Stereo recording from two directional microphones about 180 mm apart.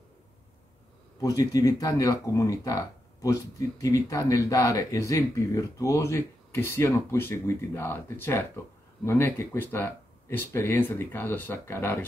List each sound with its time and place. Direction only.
1.2 s speech: 20° left (ahead or behind)